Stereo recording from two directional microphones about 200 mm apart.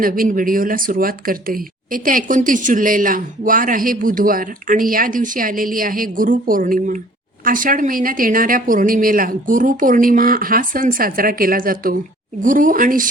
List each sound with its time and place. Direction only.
0.0 s speech: 45° right (ahead or behind)